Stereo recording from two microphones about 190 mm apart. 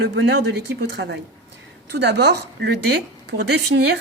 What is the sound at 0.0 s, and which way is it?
Speech, 65° right (ahead or behind).